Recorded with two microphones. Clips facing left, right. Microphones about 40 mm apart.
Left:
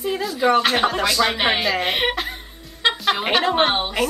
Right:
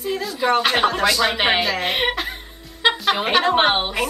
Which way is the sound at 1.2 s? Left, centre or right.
Centre.